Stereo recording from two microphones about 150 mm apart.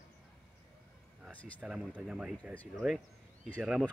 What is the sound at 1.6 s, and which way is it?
Speech, 5° right (ahead or behind).